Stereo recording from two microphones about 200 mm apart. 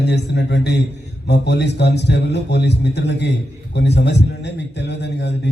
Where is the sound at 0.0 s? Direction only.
55° left (ahead or behind).